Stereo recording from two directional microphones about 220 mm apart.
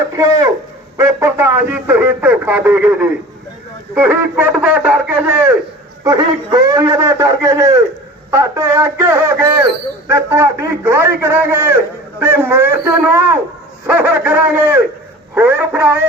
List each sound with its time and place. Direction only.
0.2 s speech: 15° right (ahead or behind)
6.1 s speech: 20° right (ahead or behind)